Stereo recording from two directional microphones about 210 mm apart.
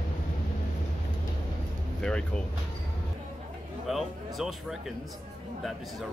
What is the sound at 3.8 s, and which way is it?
Speech, centre (ahead or behind).